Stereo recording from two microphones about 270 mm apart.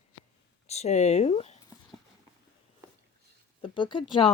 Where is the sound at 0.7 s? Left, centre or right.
Left.